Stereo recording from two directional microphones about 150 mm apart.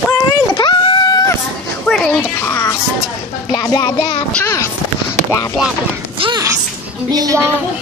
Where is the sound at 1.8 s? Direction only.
5° left (ahead or behind).